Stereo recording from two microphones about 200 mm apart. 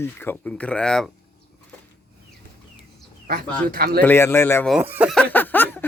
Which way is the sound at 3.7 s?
50° right (ahead or behind).